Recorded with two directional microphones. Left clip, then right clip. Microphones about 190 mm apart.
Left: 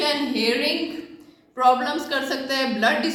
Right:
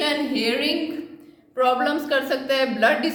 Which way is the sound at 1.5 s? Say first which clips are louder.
Left 1 dB; 45° right (ahead or behind).